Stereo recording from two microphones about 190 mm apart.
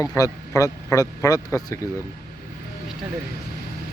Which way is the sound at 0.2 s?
15° left (ahead or behind).